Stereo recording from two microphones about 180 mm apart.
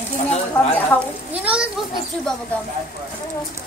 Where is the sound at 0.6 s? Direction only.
10° left (ahead or behind).